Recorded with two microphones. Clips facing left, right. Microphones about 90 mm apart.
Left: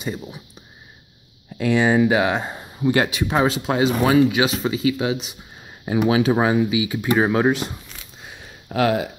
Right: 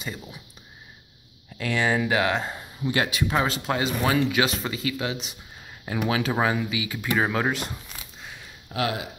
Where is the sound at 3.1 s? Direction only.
25° left (ahead or behind).